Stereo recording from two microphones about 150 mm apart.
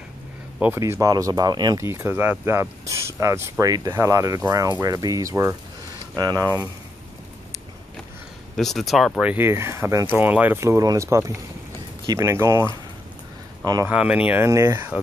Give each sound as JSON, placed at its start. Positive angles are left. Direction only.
{"t": 0.6, "sound": "speech", "side_deg": -15}
{"t": 8.5, "sound": "speech", "side_deg": 0}
{"t": 9.3, "sound": "speech", "side_deg": -15}
{"t": 13.8, "sound": "speech", "side_deg": -10}